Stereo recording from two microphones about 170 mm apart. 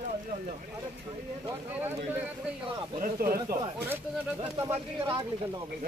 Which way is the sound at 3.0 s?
55° right (ahead or behind).